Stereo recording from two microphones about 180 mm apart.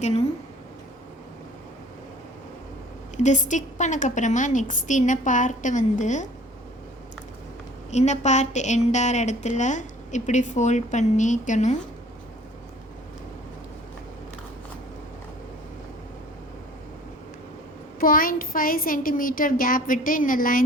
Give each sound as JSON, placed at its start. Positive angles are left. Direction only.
{"t": 3.2, "sound": "a woman's voice", "side_deg": 40}
{"t": 7.9, "sound": "a woman's voice", "side_deg": 40}
{"t": 18.0, "sound": "a woman's voice", "side_deg": 50}